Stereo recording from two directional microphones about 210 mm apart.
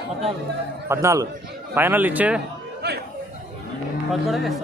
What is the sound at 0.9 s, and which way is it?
Speech, 15° right (ahead or behind).